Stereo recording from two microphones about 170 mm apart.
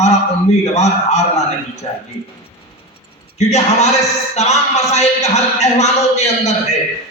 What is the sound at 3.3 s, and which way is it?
A man's voice, 40° left (ahead or behind).